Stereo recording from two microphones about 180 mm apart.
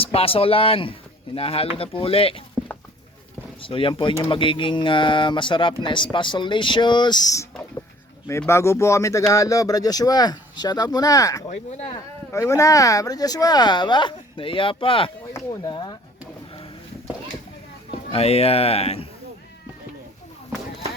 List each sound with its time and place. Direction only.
0.0 s speech: 30° left (ahead or behind)
3.6 s speech: 30° left (ahead or behind)
18.1 s speech: 35° left (ahead or behind)